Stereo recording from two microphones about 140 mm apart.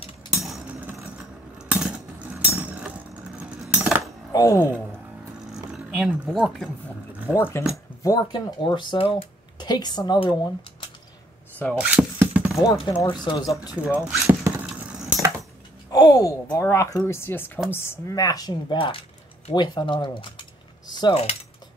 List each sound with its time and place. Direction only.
0.3 s a sound: 5° right (ahead or behind)
3.7 s music: 5° right (ahead or behind)
4.3 s music: 25° left (ahead or behind)
5.7 s speech: 5° right (ahead or behind)
7.2 s speech: 15° left (ahead or behind)
8.0 s speech: 30° left (ahead or behind)
11.7 s a sound: 10° right (ahead or behind)
12.6 s speech: 35° left (ahead or behind)
13.7 s speech: 10° right (ahead or behind)
14.2 s vehicle: 20° right (ahead or behind)
14.8 s wood: 10° right (ahead or behind)
15.9 s speech: 30° left (ahead or behind)